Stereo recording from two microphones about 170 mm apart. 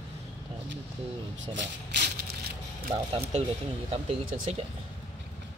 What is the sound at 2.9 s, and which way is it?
Speech, 35° right (ahead or behind).